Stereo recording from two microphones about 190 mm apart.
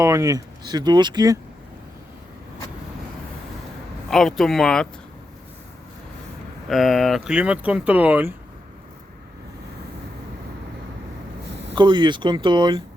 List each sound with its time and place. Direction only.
0.0 s speech: 15° right (ahead or behind)
4.1 s speech: centre (ahead or behind)
6.7 s speech: centre (ahead or behind)
11.7 s speech: 25° right (ahead or behind)